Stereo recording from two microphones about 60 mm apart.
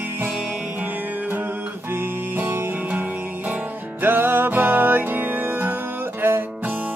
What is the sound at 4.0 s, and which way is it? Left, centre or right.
Music, right.